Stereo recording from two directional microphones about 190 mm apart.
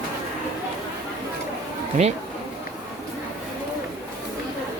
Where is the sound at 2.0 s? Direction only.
35° right (ahead or behind).